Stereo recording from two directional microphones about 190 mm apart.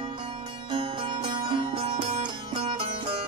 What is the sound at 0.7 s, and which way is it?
Music, 25° right (ahead or behind).